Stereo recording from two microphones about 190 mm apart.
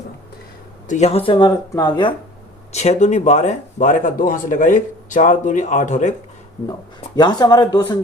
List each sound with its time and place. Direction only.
0.9 s speech: 35° left (ahead or behind)
2.7 s speech: 35° left (ahead or behind)
7.2 s speech: 20° left (ahead or behind)